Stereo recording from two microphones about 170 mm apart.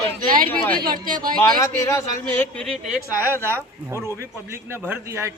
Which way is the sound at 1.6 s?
20° left (ahead or behind).